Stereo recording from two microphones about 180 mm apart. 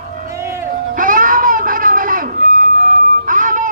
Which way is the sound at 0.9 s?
50° right (ahead or behind).